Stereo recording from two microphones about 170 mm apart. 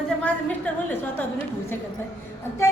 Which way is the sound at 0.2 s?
10° left (ahead or behind).